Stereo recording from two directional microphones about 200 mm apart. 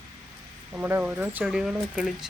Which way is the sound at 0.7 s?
5° right (ahead or behind).